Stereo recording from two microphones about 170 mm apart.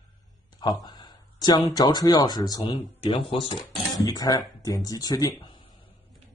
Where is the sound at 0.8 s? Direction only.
25° left (ahead or behind).